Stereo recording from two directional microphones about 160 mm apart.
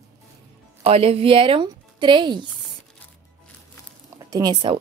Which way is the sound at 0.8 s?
40° right (ahead or behind).